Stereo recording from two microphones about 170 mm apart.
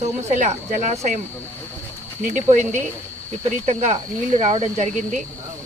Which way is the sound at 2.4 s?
45° right (ahead or behind).